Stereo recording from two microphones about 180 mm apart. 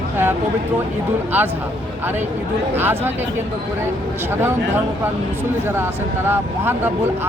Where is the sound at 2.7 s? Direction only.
10° right (ahead or behind).